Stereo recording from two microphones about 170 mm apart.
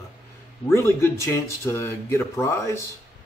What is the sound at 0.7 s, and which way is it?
Speech, 15° left (ahead or behind).